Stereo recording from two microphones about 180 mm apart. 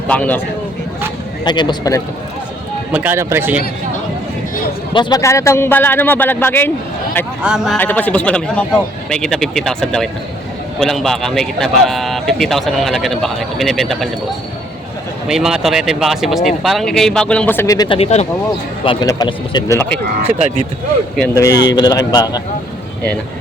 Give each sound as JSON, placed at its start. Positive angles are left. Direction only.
{"t": 0.1, "sound": "speech", "side_deg": 10}
{"t": 1.5, "sound": "speech", "side_deg": 25}
{"t": 2.9, "sound": "speech", "side_deg": -10}
{"t": 4.9, "sound": "speech", "side_deg": 25}
{"t": 7.4, "sound": "speech", "side_deg": 0}
{"t": 7.8, "sound": "speech", "side_deg": 10}
{"t": 15.3, "sound": "speech", "side_deg": -5}
{"t": 18.9, "sound": "speech", "side_deg": 25}
{"t": 21.3, "sound": "speech", "side_deg": 20}